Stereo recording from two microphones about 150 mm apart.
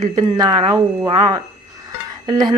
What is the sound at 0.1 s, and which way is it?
A woman's voice, 25° right (ahead or behind).